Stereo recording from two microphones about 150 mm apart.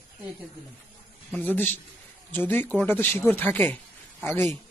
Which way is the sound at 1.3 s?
10° left (ahead or behind).